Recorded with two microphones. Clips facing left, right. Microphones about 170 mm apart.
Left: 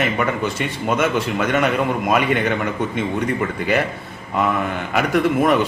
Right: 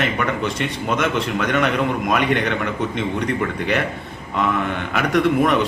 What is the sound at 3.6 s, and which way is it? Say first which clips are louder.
Speech: left 3 dB; 5° left (ahead or behind).